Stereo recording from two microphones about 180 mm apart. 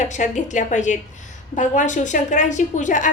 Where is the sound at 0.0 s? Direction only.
45° left (ahead or behind).